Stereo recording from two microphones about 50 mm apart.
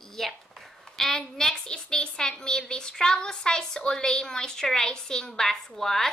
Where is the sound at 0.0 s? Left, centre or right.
Centre.